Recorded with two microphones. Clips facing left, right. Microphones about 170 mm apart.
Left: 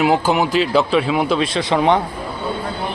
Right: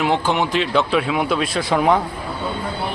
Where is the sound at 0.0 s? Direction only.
5° left (ahead or behind).